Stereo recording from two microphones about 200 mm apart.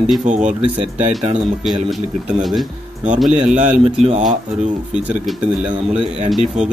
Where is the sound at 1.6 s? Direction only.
Centre (ahead or behind).